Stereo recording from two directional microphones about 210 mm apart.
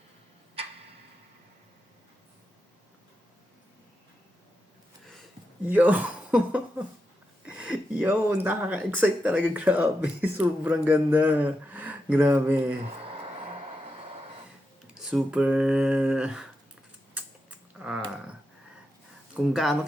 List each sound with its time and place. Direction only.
5.6 s speech: 5° right (ahead or behind)
15.1 s speech: 5° right (ahead or behind)
17.2 s typing: 5° right (ahead or behind)
19.3 s speech: centre (ahead or behind)